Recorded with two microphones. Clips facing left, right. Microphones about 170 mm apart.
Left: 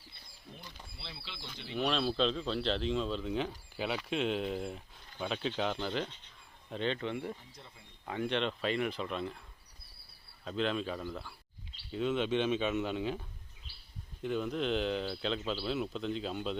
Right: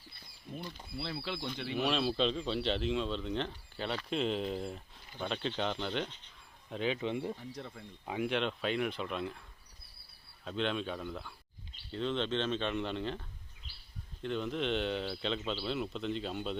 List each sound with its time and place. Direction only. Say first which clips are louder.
0.9 s speech: right 14 dB; 50° right (ahead or behind)
1.7 s speech: even; 5° right (ahead or behind)
7.0 s speech: right 2 dB; 20° right (ahead or behind)
7.3 s speech: right 10 dB; 65° right (ahead or behind)
8.0 s speech: even; 10° right (ahead or behind)
10.4 s speech: left 1 dB; centre (ahead or behind)